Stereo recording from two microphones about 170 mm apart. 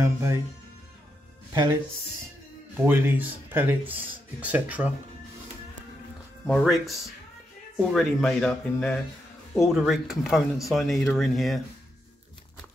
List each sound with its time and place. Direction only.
0.0 s speech: 15° right (ahead or behind)
1.5 s speech: 20° right (ahead or behind)
2.8 s speech: 10° right (ahead or behind)
6.4 s speech: centre (ahead or behind)